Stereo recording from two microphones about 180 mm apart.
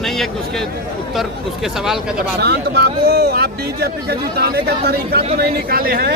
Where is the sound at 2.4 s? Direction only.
65° right (ahead or behind).